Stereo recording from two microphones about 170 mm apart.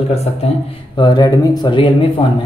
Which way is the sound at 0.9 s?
25° left (ahead or behind).